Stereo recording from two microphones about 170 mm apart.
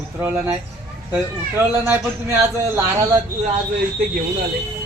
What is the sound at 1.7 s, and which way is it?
Speech, 15° right (ahead or behind).